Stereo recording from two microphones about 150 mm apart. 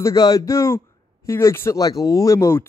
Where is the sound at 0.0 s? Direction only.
25° left (ahead or behind).